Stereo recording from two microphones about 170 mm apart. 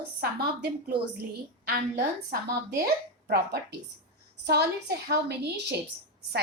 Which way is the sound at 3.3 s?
70° right (ahead or behind).